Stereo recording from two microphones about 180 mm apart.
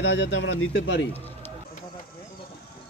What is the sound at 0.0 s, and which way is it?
Speech, 90° left.